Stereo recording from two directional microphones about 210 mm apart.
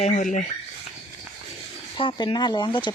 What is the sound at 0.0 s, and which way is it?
Speech, 35° left (ahead or behind).